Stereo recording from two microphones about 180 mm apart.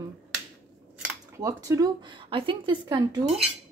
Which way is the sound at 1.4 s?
20° right (ahead or behind).